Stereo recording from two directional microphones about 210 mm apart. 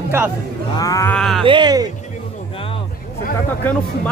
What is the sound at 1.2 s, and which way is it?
Speech, centre (ahead or behind).